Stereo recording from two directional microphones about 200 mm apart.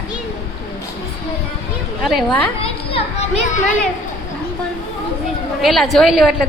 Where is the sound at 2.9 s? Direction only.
30° left (ahead or behind).